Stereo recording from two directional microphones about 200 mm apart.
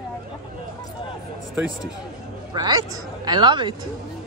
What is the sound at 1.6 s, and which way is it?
Speech, 5° right (ahead or behind).